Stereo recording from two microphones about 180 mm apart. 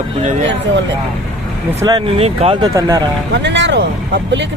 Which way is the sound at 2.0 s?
35° right (ahead or behind).